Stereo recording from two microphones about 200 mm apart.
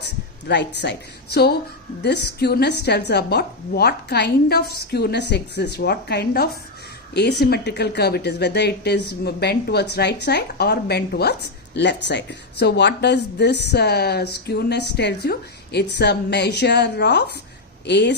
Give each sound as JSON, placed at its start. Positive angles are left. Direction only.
{"t": 0.0, "sound": "speech", "side_deg": 60}